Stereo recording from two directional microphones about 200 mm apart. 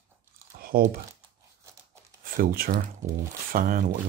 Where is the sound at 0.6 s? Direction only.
50° right (ahead or behind).